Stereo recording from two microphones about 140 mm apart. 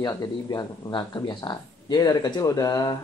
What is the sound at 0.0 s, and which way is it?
Speech, 25° left (ahead or behind).